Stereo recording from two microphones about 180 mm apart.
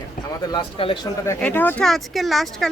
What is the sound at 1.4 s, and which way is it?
Speech, 10° left (ahead or behind).